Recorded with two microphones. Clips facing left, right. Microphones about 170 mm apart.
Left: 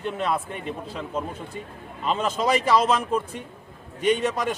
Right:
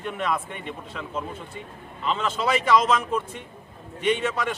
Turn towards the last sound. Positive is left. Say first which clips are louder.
# left 2 dB
turn(degrees=40)  # may be behind; listen again after turning